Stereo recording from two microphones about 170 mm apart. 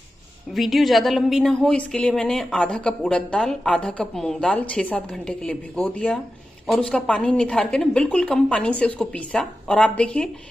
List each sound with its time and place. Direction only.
0.6 s a woman's voice: centre (ahead or behind)